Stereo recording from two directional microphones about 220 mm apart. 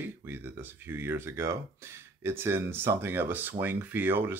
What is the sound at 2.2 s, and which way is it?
Speech, 10° right (ahead or behind).